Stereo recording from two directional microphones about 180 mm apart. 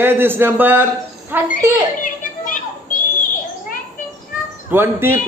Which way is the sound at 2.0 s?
45° left (ahead or behind).